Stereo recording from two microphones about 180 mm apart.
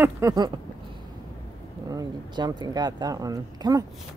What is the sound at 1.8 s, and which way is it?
Speech, 20° right (ahead or behind).